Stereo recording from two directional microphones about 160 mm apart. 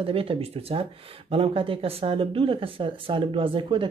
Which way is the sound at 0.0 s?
35° right (ahead or behind).